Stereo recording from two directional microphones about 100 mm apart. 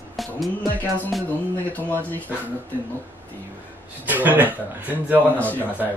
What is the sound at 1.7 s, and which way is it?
Speech, 15° left (ahead or behind).